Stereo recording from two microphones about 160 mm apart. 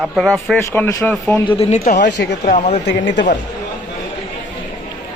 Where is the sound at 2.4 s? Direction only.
45° left (ahead or behind).